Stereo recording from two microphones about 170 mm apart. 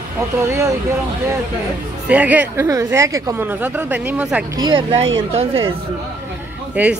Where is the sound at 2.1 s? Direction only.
10° right (ahead or behind).